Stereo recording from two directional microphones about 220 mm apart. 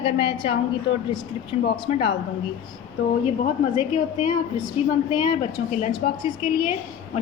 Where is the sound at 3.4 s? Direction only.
35° left (ahead or behind).